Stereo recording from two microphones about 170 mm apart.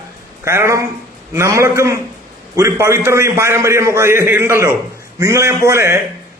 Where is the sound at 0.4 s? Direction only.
15° right (ahead or behind).